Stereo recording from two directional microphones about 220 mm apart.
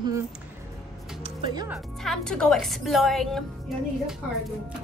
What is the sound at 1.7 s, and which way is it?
A woman's voice, centre (ahead or behind).